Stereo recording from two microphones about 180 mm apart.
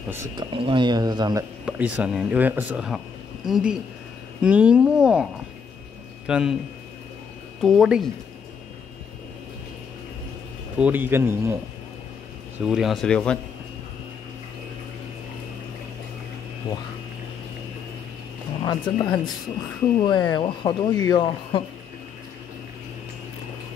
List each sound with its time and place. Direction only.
0.4 s speech: 25° right (ahead or behind)
1.7 s a man's voice: 10° right (ahead or behind)
7.6 s speech: centre (ahead or behind)
10.8 s speech: 10° right (ahead or behind)
12.6 s speech: centre (ahead or behind)
16.6 s speech: 25° left (ahead or behind)
18.6 s speech: 25° left (ahead or behind)